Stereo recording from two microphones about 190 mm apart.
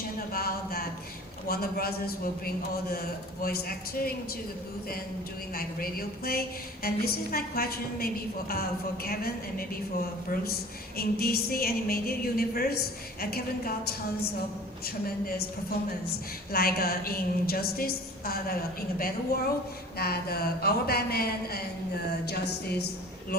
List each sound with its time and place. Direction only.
0.3 s a sound: 55° left (ahead or behind)
1.5 s a woman's voice: 50° left (ahead or behind)
3.4 s a woman's voice: 55° left (ahead or behind)
5.5 s a woman's voice: 50° left (ahead or behind)
15.0 s a woman's voice: 50° left (ahead or behind)
16.5 s a woman's voice: 50° left (ahead or behind)